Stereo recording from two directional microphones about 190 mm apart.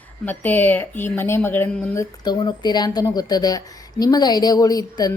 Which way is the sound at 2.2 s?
20° left (ahead or behind).